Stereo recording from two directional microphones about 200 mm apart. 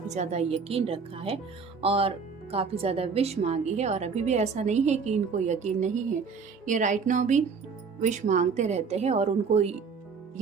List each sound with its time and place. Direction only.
0.1 s speech: 35° right (ahead or behind)